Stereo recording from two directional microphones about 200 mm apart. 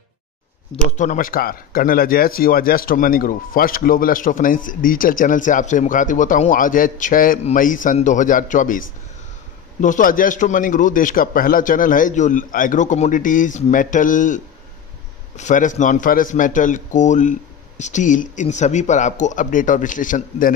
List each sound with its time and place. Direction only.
0.9 s a man's voice: 40° left (ahead or behind)